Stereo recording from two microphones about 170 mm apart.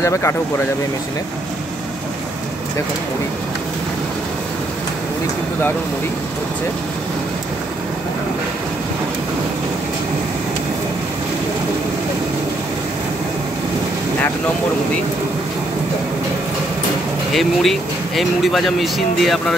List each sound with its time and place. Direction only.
0.0 s speech: 15° left (ahead or behind)
17.3 s speech: centre (ahead or behind)